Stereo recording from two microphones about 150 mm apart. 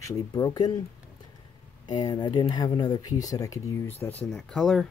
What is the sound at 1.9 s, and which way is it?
Speech, 25° left (ahead or behind).